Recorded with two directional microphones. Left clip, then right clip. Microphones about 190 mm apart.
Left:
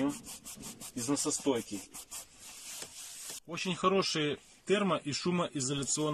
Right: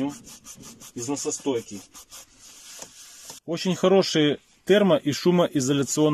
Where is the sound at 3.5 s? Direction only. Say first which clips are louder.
Right 10 dB; 45° right (ahead or behind).